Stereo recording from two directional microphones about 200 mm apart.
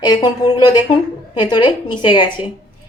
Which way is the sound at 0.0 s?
20° left (ahead or behind).